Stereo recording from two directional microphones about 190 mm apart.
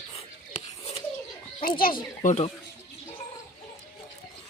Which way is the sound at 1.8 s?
45° left (ahead or behind).